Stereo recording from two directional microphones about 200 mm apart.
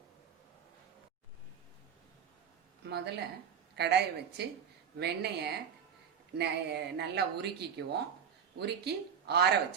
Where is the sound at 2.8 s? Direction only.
55° right (ahead or behind).